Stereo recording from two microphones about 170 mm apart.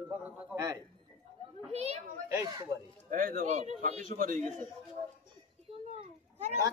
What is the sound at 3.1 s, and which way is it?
Speech, 55° right (ahead or behind).